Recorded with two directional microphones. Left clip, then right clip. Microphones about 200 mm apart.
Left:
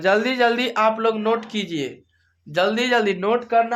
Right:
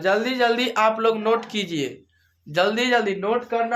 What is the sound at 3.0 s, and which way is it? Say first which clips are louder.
Speech: left 2 dB; 45° left (ahead or behind).